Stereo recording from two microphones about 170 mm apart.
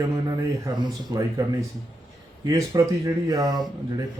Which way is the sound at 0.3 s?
20° right (ahead or behind).